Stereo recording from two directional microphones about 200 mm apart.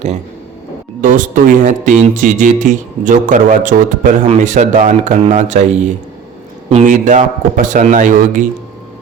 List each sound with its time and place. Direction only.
1.0 s speech: 40° right (ahead or behind)